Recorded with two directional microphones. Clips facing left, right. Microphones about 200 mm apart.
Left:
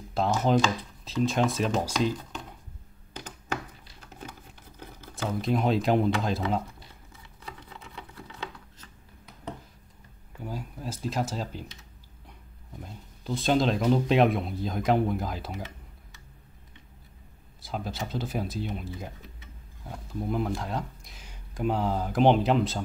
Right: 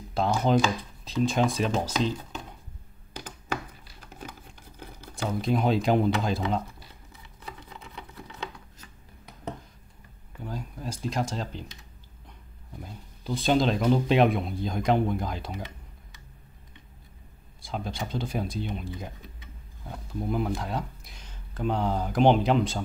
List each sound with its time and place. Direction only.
0.1 s speech: centre (ahead or behind)
3.1 s a sound: 10° right (ahead or behind)
4.7 s speech: 5° right (ahead or behind)
7.9 s a sound: 15° right (ahead or behind)
10.4 s speech: 5° left (ahead or behind)
12.8 s speech: centre (ahead or behind)
17.6 s speech: 5° left (ahead or behind)